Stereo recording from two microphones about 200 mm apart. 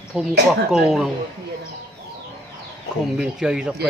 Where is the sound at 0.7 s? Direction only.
Centre (ahead or behind).